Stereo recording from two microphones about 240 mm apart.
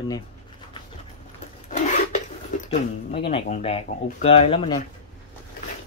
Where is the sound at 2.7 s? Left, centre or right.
Left.